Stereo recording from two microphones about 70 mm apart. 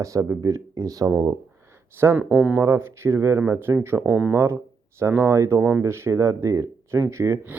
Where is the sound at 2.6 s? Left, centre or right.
Right.